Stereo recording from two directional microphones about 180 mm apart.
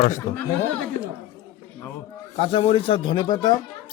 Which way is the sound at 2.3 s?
30° left (ahead or behind).